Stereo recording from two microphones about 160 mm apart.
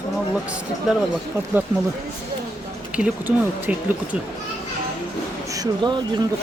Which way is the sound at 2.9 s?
10° right (ahead or behind).